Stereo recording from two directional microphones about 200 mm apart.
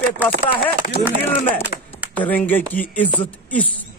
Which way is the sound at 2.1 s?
10° left (ahead or behind).